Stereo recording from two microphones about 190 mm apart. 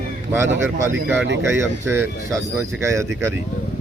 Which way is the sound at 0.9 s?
70° right (ahead or behind).